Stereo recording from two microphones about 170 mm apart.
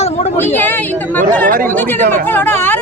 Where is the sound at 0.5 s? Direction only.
10° left (ahead or behind).